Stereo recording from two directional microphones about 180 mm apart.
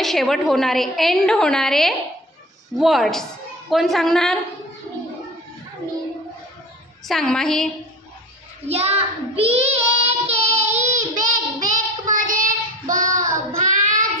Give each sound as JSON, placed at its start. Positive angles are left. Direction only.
{"t": 0.0, "sound": "a woman's voice", "side_deg": 0}
{"t": 7.1, "sound": "a woman's voice", "side_deg": 0}
{"t": 8.6, "sound": "child singing", "side_deg": -35}